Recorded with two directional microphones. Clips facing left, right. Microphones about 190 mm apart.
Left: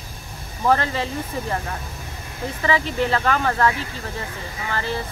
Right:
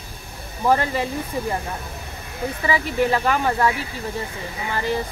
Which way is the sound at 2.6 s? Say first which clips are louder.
Even; 10° right (ahead or behind).